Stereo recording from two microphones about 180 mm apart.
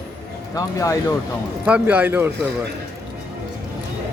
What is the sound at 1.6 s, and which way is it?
Speech, 10° right (ahead or behind).